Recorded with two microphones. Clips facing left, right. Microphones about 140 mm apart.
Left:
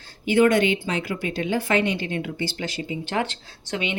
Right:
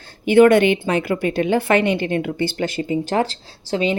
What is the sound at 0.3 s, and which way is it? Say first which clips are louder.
A woman's voice: right 6 dB; 60° right (ahead or behind).